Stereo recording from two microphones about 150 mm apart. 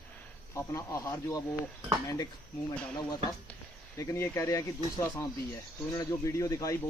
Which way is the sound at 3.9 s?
20° left (ahead or behind).